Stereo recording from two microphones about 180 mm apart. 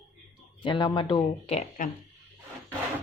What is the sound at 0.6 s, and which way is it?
Speech, 25° left (ahead or behind).